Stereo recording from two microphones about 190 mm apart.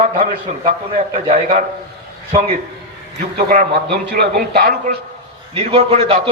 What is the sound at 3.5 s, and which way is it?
A man's voice, 50° right (ahead or behind).